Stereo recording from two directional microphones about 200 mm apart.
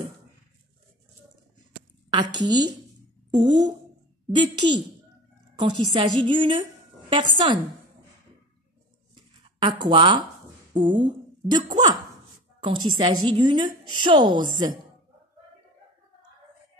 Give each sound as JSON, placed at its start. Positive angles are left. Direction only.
{"t": 2.1, "sound": "a woman's voice", "side_deg": -20}
{"t": 9.4, "sound": "a woman's voice", "side_deg": -25}